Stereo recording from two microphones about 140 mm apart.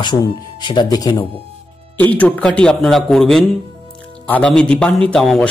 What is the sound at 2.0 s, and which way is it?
A man's voice, 10° left (ahead or behind).